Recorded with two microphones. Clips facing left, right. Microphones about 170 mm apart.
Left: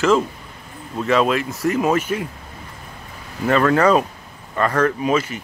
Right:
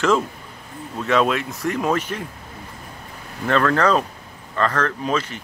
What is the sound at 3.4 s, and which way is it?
Speech, 10° left (ahead or behind).